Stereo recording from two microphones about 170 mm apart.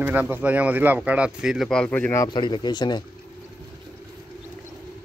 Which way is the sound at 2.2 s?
25° left (ahead or behind).